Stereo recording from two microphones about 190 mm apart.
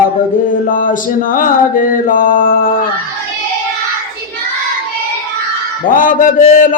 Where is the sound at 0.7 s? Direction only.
45° left (ahead or behind).